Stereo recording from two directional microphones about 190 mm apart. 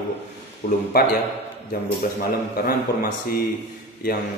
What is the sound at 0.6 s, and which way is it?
Speech, 55° left (ahead or behind).